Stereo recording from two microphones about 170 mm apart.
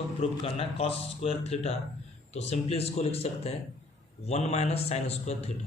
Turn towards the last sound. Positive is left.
turn(degrees=40)  # may be behind; listen again after turning